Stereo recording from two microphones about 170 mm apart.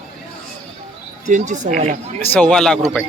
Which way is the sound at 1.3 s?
50° right (ahead or behind).